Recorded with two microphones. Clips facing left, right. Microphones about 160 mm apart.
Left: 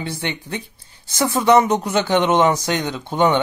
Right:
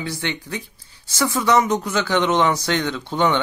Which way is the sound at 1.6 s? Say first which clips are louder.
Left 2 dB; 30° left (ahead or behind).